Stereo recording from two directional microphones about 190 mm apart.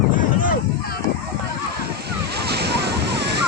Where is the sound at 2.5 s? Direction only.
60° right (ahead or behind).